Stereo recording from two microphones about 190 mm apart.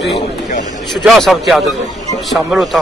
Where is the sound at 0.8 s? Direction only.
Centre (ahead or behind).